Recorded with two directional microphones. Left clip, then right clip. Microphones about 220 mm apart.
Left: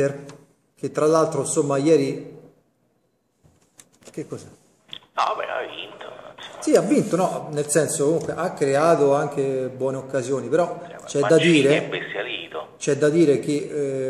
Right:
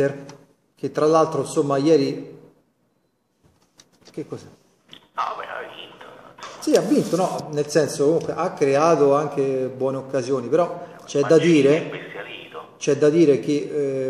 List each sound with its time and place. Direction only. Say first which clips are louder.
0.7 s speech: right 1 dB; 5° left (ahead or behind)
4.1 s speech: even; 10° left (ahead or behind)
4.9 s whispering: left 4 dB; 50° left (ahead or behind)
6.7 s speech: even; 5° left (ahead or behind)
11.7 s speech: left 1 dB; 50° left (ahead or behind)
12.8 s speech: right 2 dB; 5° left (ahead or behind)